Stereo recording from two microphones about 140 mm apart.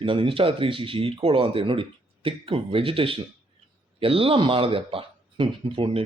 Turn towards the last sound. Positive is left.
turn(degrees=-40)  # may be behind; listen again after turning